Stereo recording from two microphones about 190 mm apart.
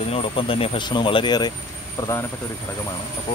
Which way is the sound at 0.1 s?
30° left (ahead or behind).